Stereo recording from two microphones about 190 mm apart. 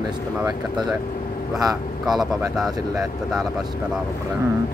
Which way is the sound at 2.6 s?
Centre (ahead or behind).